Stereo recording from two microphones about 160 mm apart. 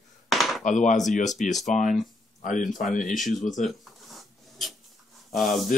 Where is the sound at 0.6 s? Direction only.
50° left (ahead or behind).